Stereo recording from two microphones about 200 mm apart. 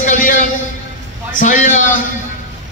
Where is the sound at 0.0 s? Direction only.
40° left (ahead or behind).